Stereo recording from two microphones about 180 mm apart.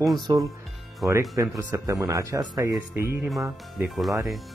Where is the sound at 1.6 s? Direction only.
15° right (ahead or behind).